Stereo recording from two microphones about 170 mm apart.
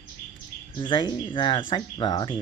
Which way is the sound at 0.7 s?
30° left (ahead or behind).